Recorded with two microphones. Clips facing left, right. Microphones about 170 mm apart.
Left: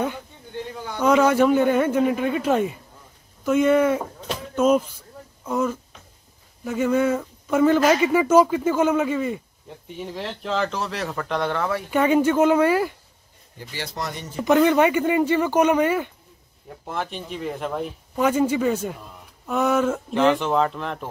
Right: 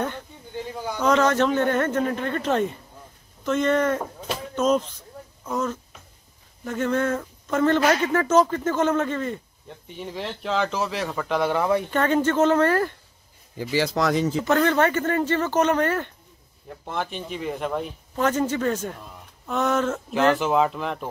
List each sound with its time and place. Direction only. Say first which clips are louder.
1.0 s speech: left 3 dB; 10° left (ahead or behind); by 11.8 s 15° right (ahead or behind)
11.9 s speech: left 3 dB; 10° left (ahead or behind)
13.6 s speech: right 9 dB; 90° right
14.4 s speech: left 6 dB; 15° left (ahead or behind)
20.1 s speech: right 1 dB; 5° right (ahead or behind)